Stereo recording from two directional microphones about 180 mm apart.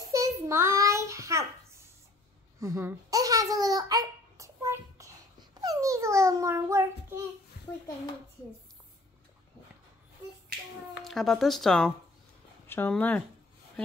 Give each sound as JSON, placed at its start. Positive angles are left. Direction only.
{"t": 0.1, "sound": "child singing", "side_deg": -15}
{"t": 2.6, "sound": "babbling", "side_deg": -15}
{"t": 5.6, "sound": "a sound", "side_deg": -20}
{"t": 11.1, "sound": "speech", "side_deg": 0}